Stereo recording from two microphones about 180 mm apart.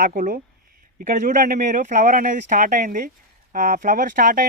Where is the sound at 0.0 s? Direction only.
45° right (ahead or behind).